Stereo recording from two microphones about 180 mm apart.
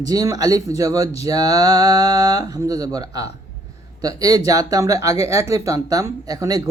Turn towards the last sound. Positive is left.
turn(degrees=-20)  # may be behind; listen again after turning